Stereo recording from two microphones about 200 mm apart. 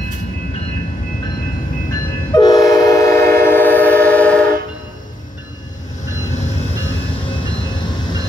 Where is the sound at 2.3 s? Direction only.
20° left (ahead or behind).